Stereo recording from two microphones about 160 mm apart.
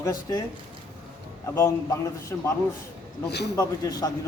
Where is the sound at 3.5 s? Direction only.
25° left (ahead or behind).